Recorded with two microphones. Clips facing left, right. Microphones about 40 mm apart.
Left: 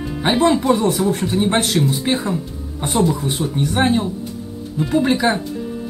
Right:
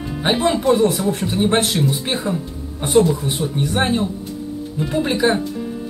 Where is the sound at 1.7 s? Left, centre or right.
Centre.